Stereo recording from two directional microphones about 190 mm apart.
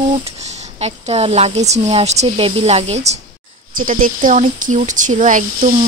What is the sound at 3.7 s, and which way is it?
Speech, 45° right (ahead or behind).